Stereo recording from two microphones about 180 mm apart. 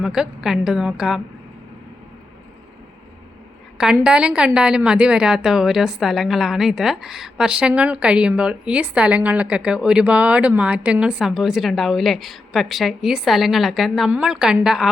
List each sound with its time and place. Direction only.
0.0 s a woman's voice: 5° right (ahead or behind)
3.8 s a woman's voice: 5° right (ahead or behind)